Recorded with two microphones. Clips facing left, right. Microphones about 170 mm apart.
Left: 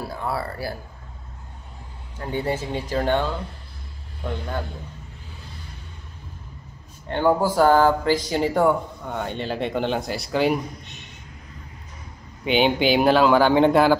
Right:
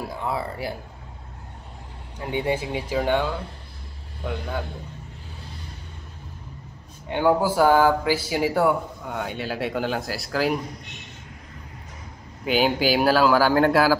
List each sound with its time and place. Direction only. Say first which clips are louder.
0.0 s speech: even; 15° right (ahead or behind)
2.1 s speech: right 1 dB; 10° right (ahead or behind)
7.1 s speech: even; 10° right (ahead or behind)
12.4 s speech: left 2 dB; 5° right (ahead or behind)